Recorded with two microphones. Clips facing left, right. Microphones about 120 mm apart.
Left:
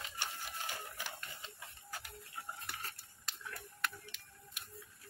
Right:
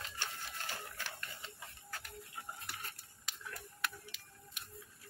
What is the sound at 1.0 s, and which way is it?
Printer, 15° left (ahead or behind).